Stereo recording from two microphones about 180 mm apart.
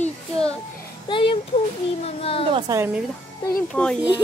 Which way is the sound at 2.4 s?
25° right (ahead or behind).